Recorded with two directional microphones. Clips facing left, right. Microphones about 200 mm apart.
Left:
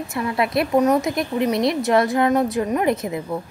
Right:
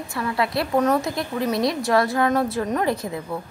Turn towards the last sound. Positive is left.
turn(degrees=20)  # may be behind; listen again after turning